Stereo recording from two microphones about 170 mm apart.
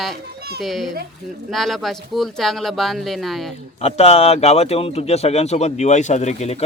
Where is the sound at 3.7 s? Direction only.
40° left (ahead or behind).